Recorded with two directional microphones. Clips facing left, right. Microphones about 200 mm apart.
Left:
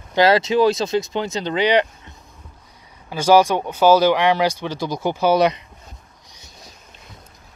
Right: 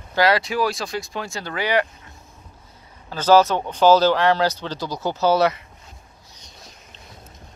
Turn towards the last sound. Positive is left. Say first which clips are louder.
# left 2 dB
turn(degrees=15)  # may be behind; listen again after turning